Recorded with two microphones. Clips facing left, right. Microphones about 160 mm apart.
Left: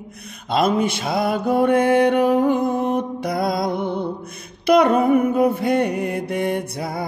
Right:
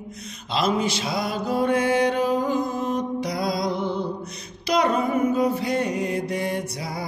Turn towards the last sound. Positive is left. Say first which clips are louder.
# left 4 dB
turn(degrees=55)  # may be behind; listen again after turning